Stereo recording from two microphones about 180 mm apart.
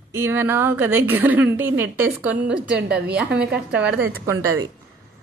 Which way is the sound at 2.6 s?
65° right (ahead or behind).